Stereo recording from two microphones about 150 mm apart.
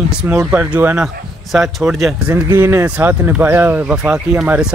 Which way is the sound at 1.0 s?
Centre (ahead or behind).